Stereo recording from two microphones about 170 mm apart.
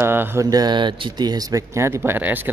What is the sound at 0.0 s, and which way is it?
A man's voice, 15° right (ahead or behind).